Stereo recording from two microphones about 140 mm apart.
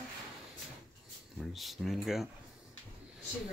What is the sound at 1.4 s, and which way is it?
Speech, centre (ahead or behind).